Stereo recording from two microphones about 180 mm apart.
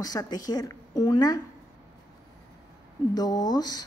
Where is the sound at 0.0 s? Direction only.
20° left (ahead or behind).